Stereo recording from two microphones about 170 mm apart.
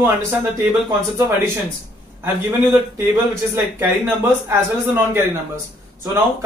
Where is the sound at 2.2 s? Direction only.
15° right (ahead or behind).